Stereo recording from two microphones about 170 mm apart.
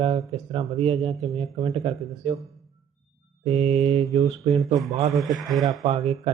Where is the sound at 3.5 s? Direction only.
40° right (ahead or behind).